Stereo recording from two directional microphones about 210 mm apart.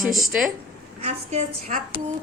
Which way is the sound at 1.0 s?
35° right (ahead or behind).